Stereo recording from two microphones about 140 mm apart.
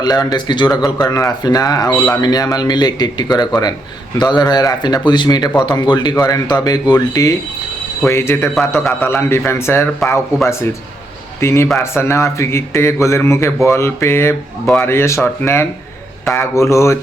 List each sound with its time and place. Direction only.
0.0 s speech: 30° left (ahead or behind)